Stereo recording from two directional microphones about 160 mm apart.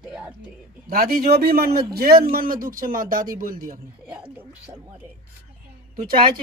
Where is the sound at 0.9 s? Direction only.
70° right (ahead or behind).